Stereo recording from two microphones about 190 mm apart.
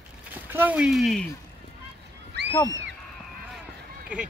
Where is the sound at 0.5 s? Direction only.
5° right (ahead or behind).